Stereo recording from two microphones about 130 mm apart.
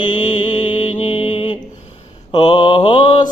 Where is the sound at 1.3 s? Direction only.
45° left (ahead or behind).